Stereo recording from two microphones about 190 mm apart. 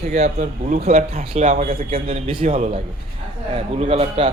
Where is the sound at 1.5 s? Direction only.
50° right (ahead or behind).